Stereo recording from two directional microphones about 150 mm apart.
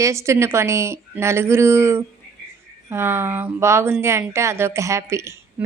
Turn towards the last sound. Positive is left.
turn(degrees=-20)  # may be behind; listen again after turning